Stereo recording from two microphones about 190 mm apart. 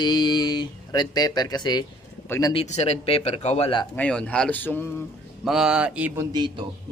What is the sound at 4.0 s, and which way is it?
Speech, 5° left (ahead or behind).